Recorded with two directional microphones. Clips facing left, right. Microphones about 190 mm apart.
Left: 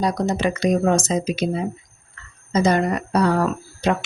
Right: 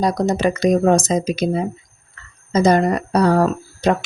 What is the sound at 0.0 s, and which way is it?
Speech, 40° right (ahead or behind).